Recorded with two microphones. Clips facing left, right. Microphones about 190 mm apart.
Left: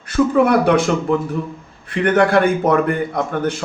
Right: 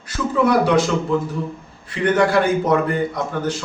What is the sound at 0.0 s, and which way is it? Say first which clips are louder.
A man's voice: left 5 dB; 55° left (ahead or behind).